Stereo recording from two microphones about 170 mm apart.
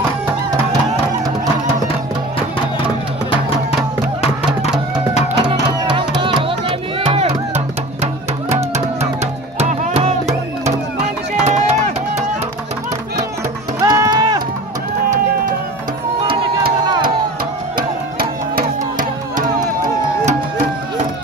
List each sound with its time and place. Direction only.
5.4 s music: 30° right (ahead or behind)
8.7 s music: 40° right (ahead or behind)
11.4 s run: 40° right (ahead or behind)
13.7 s run: 20° right (ahead or behind)
18.6 s music: 50° right (ahead or behind)